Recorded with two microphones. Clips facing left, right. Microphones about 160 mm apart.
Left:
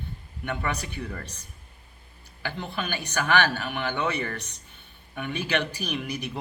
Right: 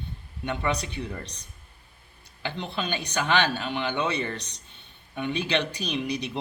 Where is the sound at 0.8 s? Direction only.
20° right (ahead or behind).